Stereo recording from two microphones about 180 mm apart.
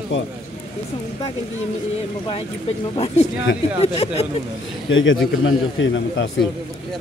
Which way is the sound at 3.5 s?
90° left.